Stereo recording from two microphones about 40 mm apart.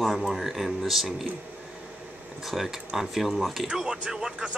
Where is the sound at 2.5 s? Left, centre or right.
Centre.